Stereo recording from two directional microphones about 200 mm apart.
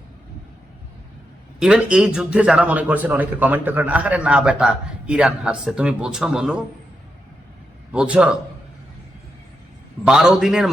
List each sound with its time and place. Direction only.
1.5 s a man's voice: 5° right (ahead or behind)
7.9 s a man's voice: 5° right (ahead or behind)
10.1 s a man's voice: 5° right (ahead or behind)